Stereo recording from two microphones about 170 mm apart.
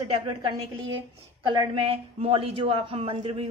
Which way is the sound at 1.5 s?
30° right (ahead or behind).